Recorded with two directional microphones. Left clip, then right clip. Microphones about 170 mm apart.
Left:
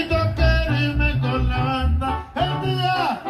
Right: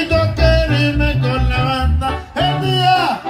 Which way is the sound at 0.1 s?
15° right (ahead or behind).